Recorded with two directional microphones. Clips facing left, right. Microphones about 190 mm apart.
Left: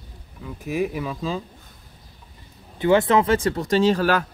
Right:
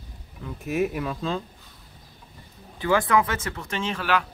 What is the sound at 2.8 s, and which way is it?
Speech, 25° left (ahead or behind).